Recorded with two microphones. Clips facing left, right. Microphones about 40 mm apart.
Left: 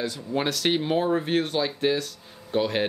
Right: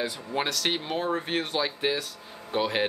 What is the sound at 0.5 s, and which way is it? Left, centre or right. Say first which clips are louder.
Speech: left 5 dB; centre.